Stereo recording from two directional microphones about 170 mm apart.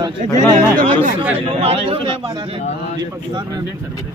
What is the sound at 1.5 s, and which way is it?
Speech, 35° right (ahead or behind).